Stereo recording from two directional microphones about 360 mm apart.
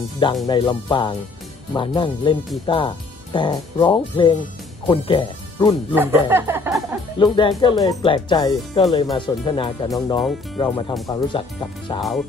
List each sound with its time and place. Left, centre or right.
0.5 s speech: centre
5.9 s music: centre
7.2 s speech: centre
9.8 s music: centre
10.6 s speech: centre